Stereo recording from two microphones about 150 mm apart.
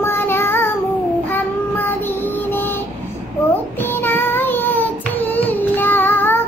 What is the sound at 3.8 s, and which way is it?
Child singing, 15° left (ahead or behind).